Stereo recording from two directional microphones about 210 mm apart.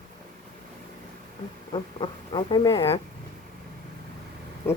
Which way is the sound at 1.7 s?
25° left (ahead or behind).